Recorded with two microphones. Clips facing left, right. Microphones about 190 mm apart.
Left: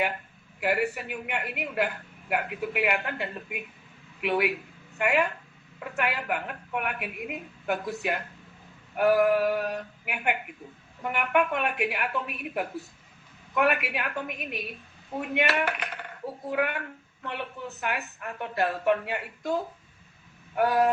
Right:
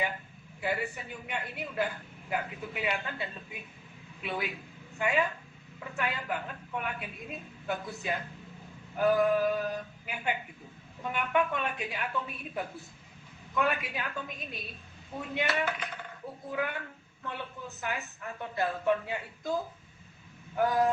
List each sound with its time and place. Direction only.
0.6 s speech: 70° left (ahead or behind)